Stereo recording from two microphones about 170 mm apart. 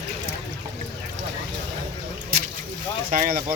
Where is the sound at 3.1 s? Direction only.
55° right (ahead or behind).